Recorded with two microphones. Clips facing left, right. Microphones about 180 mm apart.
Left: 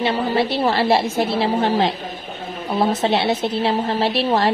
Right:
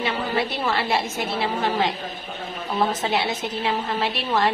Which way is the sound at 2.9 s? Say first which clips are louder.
Left 6 dB; 30° left (ahead or behind).